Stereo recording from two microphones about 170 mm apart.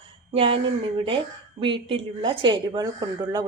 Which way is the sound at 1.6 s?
30° right (ahead or behind).